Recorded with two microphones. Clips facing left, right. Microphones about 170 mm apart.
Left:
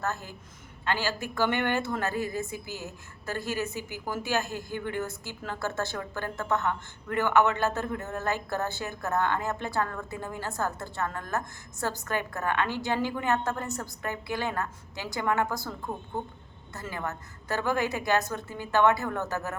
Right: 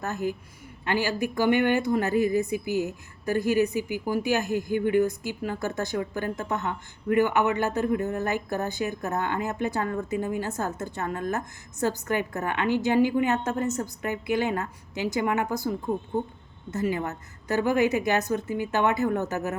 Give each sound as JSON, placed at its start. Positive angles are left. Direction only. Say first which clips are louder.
{"t": 0.0, "sound": "a woman's voice", "louder": "right 5 dB", "side_deg": -15}
{"t": 16.7, "sound": "a woman's voice", "louder": "right 8 dB", "side_deg": -20}